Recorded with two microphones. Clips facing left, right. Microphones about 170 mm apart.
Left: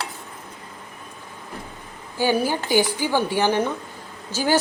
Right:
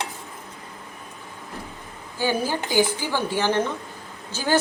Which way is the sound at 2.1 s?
15° left (ahead or behind).